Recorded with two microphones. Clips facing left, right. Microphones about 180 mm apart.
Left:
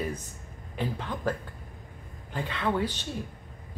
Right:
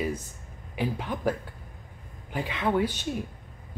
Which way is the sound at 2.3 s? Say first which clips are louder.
Right 3 dB; 10° right (ahead or behind).